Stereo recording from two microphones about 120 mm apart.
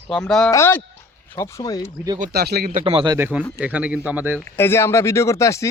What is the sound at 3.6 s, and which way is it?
Speech, 10° right (ahead or behind).